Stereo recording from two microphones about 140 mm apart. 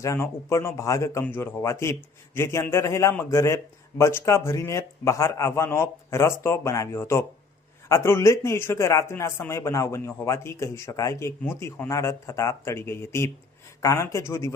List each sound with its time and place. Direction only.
0.0 s a man's voice: 20° left (ahead or behind)